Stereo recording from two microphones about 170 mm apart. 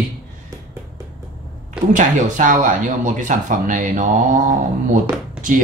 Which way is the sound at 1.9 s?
50° right (ahead or behind).